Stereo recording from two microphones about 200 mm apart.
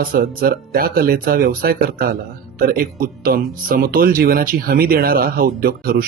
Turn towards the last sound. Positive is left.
turn(degrees=-45)  # may be behind; listen again after turning